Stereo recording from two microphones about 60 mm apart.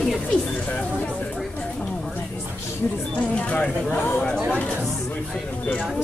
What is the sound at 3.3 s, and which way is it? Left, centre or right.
Speech, left.